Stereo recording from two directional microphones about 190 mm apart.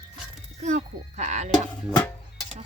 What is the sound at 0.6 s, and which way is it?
Speech, 40° right (ahead or behind).